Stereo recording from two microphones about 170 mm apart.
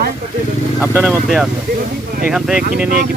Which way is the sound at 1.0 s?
5° right (ahead or behind).